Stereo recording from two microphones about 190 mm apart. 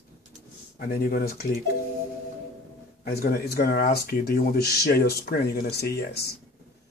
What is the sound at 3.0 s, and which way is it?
Speech, 55° left (ahead or behind).